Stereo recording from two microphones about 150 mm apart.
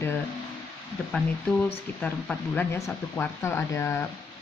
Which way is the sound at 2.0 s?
10° left (ahead or behind).